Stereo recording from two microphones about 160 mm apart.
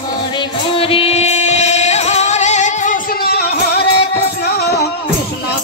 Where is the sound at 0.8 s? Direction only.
35° left (ahead or behind); by 4.8 s 90° left.